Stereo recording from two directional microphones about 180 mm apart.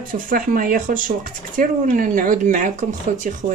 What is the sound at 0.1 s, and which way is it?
Speech, 50° right (ahead or behind).